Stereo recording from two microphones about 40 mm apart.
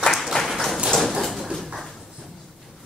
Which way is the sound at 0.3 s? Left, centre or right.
Left.